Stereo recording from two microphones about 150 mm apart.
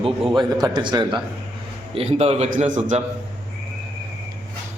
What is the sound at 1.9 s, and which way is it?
A man's voice, 45° right (ahead or behind).